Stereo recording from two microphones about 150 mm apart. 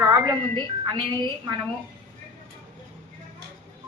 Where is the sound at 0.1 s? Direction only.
25° right (ahead or behind).